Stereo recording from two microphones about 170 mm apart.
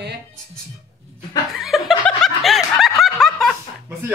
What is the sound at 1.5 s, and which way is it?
Snicker, centre (ahead or behind).